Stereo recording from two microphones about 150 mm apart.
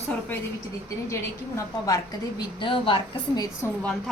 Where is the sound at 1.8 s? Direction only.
25° left (ahead or behind).